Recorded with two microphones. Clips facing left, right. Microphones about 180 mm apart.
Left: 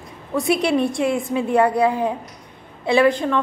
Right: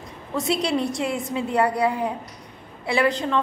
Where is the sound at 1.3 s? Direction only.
20° left (ahead or behind).